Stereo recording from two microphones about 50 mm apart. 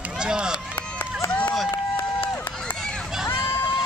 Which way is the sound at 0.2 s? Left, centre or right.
Centre.